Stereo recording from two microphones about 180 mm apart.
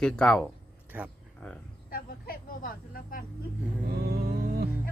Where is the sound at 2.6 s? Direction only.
50° left (ahead or behind).